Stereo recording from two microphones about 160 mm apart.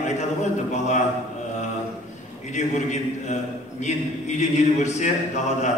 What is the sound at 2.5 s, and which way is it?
A man's voice, 45° left (ahead or behind).